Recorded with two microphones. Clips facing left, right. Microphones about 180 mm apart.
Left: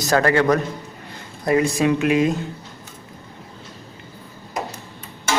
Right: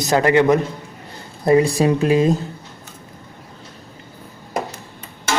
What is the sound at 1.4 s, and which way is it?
Speech, 30° right (ahead or behind).